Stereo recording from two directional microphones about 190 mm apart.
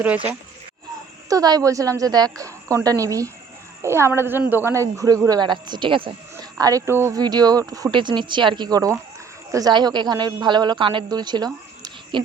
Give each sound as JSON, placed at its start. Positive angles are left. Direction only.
{"t": 0.0, "sound": "speech", "side_deg": -5}
{"t": 1.3, "sound": "a woman's voice", "side_deg": -20}